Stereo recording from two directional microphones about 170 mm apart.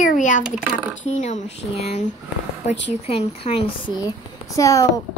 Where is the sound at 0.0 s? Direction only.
50° left (ahead or behind).